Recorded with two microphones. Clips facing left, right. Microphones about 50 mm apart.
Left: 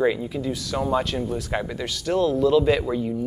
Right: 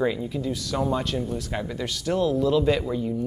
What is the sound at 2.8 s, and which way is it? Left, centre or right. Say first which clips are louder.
Speech: left 2 dB; centre.